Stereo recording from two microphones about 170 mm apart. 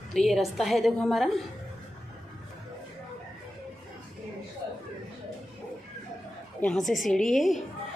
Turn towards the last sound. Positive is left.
turn(degrees=0)  # may be behind; listen again after turning